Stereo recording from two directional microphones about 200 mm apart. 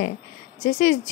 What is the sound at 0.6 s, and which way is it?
Speech, 40° left (ahead or behind).